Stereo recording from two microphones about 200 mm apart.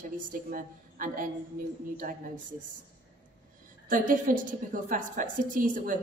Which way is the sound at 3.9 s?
40° right (ahead or behind).